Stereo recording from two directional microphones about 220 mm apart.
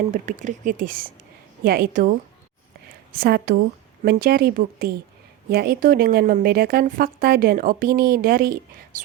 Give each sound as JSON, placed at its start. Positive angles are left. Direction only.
{"t": 0.1, "sound": "a woman's voice", "side_deg": -35}